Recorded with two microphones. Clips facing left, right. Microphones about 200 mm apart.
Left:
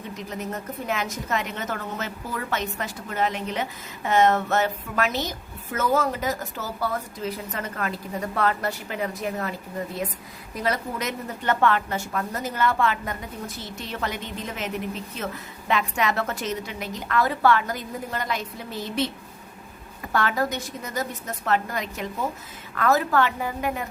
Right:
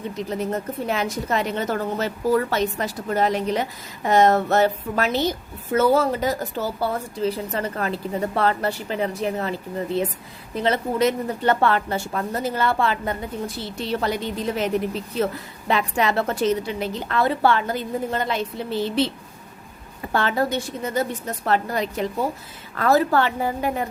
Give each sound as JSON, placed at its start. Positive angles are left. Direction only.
{"t": 0.2, "sound": "a woman's voice", "side_deg": -30}
{"t": 20.1, "sound": "a woman's voice", "side_deg": -30}